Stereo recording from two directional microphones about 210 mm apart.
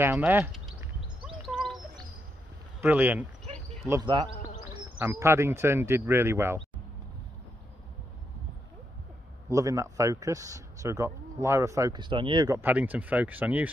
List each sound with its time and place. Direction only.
0.0 s a sound: 10° right (ahead or behind)
2.8 s a man's voice: 10° right (ahead or behind)
9.5 s a man's voice: 15° right (ahead or behind)